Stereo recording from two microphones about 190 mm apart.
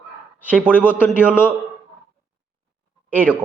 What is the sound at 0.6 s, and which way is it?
Speech, 5° right (ahead or behind).